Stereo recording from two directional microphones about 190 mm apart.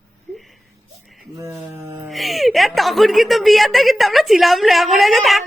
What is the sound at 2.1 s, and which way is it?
A woman's voice, centre (ahead or behind).